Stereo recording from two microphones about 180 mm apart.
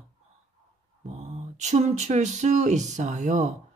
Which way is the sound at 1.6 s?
40° right (ahead or behind).